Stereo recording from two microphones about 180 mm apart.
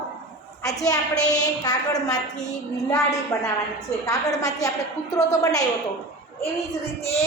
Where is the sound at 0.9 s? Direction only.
20° left (ahead or behind).